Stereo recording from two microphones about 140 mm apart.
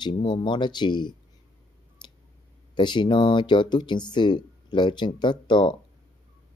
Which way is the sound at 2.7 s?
35° left (ahead or behind).